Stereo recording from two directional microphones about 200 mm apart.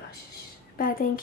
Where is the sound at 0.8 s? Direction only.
45° left (ahead or behind).